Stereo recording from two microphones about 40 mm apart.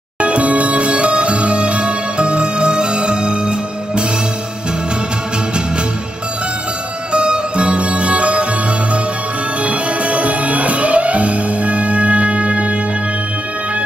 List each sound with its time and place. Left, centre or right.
0.2 s music: right
7.1 s music: right
9.6 s music: right